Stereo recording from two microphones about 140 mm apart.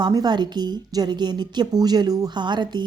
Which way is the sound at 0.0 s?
30° right (ahead or behind).